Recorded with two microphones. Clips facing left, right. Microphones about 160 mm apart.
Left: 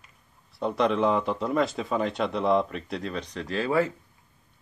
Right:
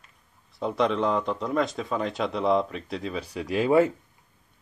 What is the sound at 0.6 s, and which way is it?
A man's voice, centre (ahead or behind).